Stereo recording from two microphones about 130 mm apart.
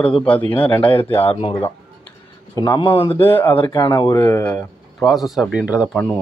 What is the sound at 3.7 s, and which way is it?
Speech, 30° left (ahead or behind).